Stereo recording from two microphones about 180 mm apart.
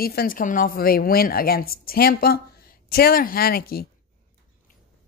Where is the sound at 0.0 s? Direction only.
60° left (ahead or behind).